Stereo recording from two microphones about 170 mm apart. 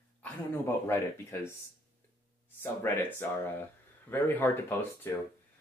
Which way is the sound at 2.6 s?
15° left (ahead or behind).